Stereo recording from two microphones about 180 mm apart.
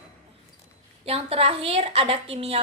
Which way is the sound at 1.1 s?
35° right (ahead or behind).